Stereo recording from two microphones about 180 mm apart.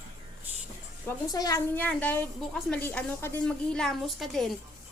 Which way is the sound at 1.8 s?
10° left (ahead or behind).